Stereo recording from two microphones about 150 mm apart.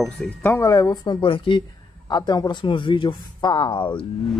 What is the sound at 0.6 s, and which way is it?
Speech, 25° left (ahead or behind).